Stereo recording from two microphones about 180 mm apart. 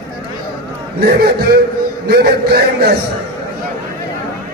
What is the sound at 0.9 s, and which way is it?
A man's voice, 60° right (ahead or behind).